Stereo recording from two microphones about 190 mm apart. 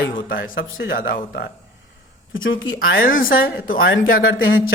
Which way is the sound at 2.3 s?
90° left.